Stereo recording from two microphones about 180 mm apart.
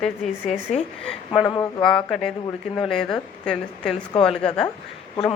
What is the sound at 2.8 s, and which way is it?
A woman's voice, centre (ahead or behind).